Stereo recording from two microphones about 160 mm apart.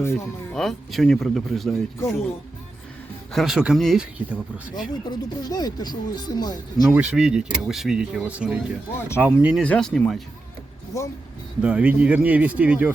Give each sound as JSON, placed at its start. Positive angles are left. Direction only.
{"t": 0.0, "sound": "speech", "side_deg": 15}
{"t": 0.5, "sound": "speech", "side_deg": 0}
{"t": 3.3, "sound": "speech", "side_deg": -5}
{"t": 5.0, "sound": "speech", "side_deg": 25}
{"t": 6.9, "sound": "speech", "side_deg": -5}
{"t": 8.9, "sound": "speech", "side_deg": 15}
{"t": 9.2, "sound": "speech", "side_deg": -5}
{"t": 9.6, "sound": "speech", "side_deg": 5}
{"t": 10.9, "sound": "speech", "side_deg": 20}
{"t": 11.6, "sound": "speech", "side_deg": -5}